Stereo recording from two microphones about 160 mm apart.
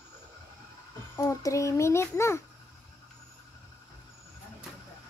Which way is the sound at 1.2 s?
20° left (ahead or behind).